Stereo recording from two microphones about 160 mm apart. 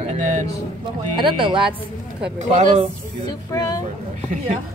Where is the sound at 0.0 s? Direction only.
45° right (ahead or behind).